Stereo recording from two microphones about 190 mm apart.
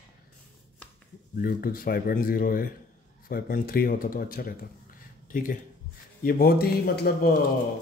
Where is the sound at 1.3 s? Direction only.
50° left (ahead or behind).